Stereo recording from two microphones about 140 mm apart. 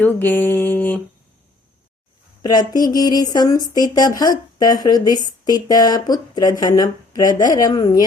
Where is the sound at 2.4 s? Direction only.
30° left (ahead or behind).